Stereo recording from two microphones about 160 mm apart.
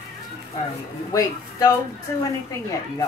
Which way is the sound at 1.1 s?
20° left (ahead or behind).